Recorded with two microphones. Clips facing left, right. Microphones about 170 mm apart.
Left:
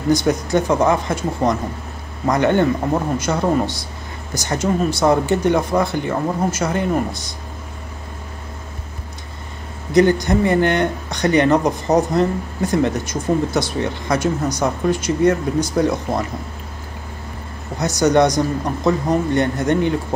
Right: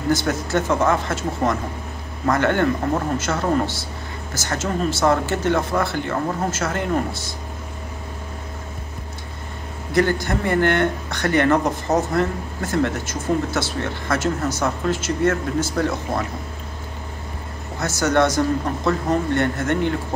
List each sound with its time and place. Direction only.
0.1 s speech: 15° left (ahead or behind)
9.9 s speech: 15° left (ahead or behind)
17.7 s speech: 15° left (ahead or behind)